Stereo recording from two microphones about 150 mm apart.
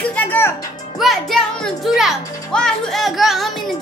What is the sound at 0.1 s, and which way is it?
Music, 10° left (ahead or behind).